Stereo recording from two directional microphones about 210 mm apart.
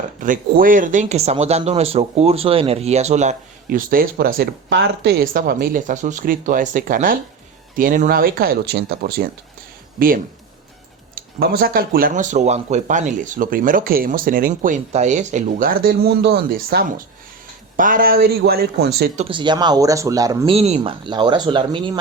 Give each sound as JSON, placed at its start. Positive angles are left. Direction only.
{"t": 0.2, "sound": "speech", "side_deg": -40}
{"t": 11.1, "sound": "speech", "side_deg": -45}
{"t": 19.1, "sound": "speech", "side_deg": -25}